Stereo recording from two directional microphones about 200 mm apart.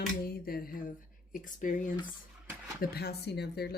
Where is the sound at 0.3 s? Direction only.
50° left (ahead or behind).